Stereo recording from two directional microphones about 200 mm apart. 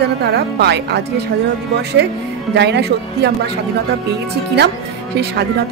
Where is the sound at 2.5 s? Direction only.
60° right (ahead or behind).